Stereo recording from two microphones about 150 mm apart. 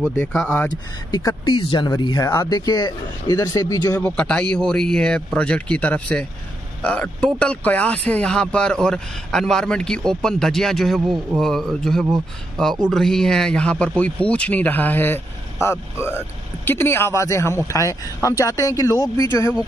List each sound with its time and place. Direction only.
0.2 s speech: 5° left (ahead or behind)
0.7 s speech: 25° left (ahead or behind)
4.0 s speech: 10° left (ahead or behind)